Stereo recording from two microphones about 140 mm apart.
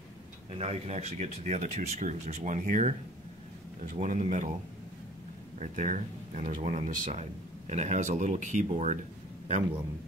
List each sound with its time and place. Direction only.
0.6 s speech: 50° right (ahead or behind)
5.6 s speech: 60° right (ahead or behind)